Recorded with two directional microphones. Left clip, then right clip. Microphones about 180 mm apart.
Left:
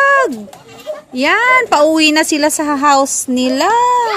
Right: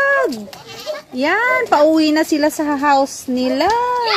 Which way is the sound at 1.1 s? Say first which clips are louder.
Left 5 dB; 5° left (ahead or behind).